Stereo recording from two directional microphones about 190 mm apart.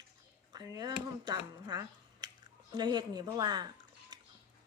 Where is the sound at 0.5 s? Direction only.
20° right (ahead or behind).